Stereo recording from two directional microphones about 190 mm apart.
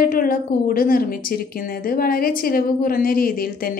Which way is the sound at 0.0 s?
50° left (ahead or behind).